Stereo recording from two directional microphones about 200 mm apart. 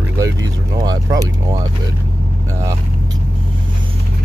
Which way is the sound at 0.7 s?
20° right (ahead or behind).